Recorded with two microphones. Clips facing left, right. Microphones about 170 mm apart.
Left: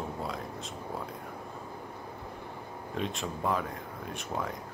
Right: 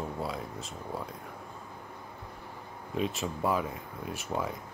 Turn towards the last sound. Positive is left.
turn(degrees=-5)  # may be behind; listen again after turning